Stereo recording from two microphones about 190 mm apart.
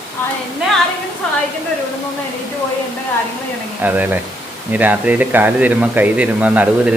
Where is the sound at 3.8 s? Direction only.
10° right (ahead or behind).